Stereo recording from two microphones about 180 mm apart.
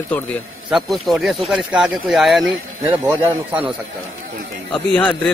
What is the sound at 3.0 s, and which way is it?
Speech, 10° right (ahead or behind).